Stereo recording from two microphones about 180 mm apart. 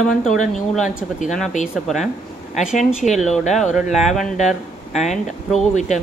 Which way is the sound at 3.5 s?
Centre (ahead or behind).